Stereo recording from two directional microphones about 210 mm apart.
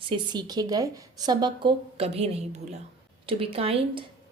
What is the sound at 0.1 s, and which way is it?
A woman's voice, 20° right (ahead or behind).